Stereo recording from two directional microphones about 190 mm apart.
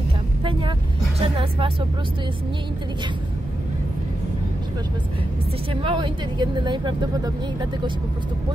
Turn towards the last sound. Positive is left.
turn(degrees=-25)  # may be behind; listen again after turning